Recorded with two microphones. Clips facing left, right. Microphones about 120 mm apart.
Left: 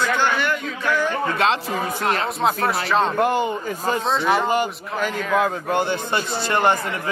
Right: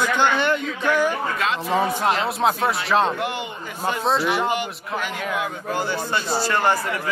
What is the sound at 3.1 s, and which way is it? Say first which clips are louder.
Speech: left 7 dB; 40° left (ahead or behind).